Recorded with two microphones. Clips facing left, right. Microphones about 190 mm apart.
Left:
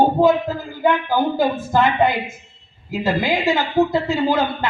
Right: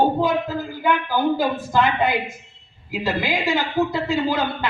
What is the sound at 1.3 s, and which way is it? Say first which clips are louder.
Speech: left 3 dB; 45° left (ahead or behind).